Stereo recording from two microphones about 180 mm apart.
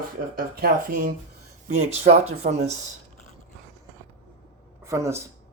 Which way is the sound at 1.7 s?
35° right (ahead or behind).